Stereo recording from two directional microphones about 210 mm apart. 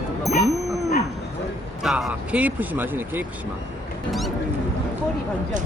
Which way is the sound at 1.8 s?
5° right (ahead or behind).